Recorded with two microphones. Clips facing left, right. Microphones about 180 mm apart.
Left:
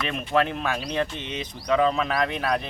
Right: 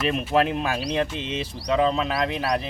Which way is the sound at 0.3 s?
35° right (ahead or behind).